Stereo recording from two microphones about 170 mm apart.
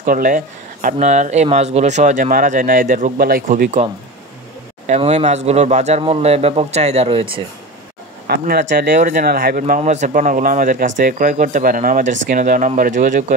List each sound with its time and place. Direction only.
0.0 s speech: 55° right (ahead or behind)
4.8 s speech: 40° right (ahead or behind)
8.3 s speech: 65° right (ahead or behind)
9.8 s speech: 45° right (ahead or behind)